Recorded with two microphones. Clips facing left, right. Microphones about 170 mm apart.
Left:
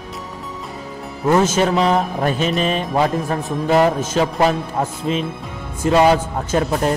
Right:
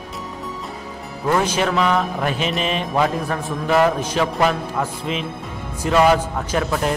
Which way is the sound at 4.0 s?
45° left (ahead or behind).